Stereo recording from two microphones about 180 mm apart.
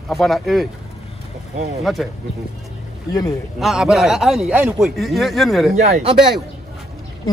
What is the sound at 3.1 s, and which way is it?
Speech, 20° left (ahead or behind).